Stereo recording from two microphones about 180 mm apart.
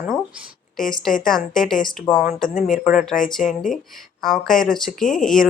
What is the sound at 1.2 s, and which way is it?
Speech, centre (ahead or behind).